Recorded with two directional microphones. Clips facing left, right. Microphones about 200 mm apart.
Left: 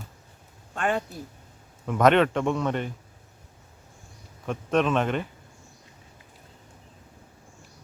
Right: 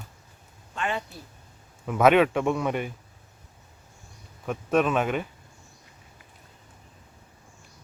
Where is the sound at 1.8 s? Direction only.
5° right (ahead or behind).